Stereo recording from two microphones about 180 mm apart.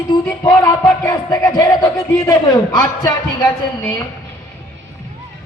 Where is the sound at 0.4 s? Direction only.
20° left (ahead or behind).